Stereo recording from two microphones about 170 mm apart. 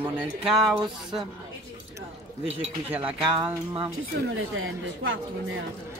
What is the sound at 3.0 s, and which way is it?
Speech, 30° right (ahead or behind).